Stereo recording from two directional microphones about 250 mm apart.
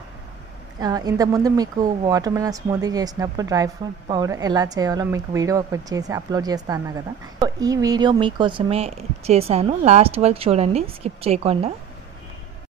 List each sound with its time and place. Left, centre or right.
0.7 s speech: centre